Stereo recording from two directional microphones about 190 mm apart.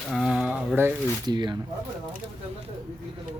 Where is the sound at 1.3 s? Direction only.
25° right (ahead or behind).